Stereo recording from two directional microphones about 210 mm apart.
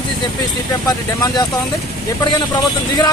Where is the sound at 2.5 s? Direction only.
20° left (ahead or behind).